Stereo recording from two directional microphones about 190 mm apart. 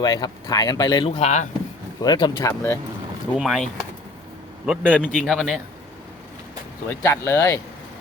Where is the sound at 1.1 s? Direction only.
35° left (ahead or behind).